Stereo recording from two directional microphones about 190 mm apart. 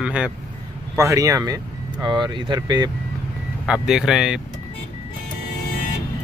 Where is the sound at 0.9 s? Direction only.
15° right (ahead or behind).